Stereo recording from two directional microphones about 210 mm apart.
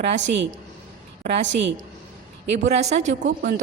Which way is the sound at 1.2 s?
35° right (ahead or behind).